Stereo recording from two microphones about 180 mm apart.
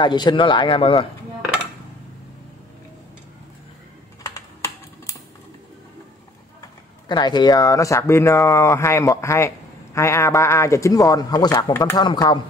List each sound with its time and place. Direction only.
0.0 s a man's voice: 25° left (ahead or behind)
4.2 s typing: 20° left (ahead or behind)
7.1 s a man's voice: 25° left (ahead or behind)